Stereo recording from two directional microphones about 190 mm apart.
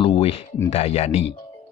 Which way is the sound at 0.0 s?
30° left (ahead or behind).